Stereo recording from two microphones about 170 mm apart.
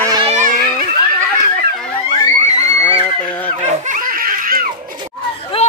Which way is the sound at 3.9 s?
55° right (ahead or behind).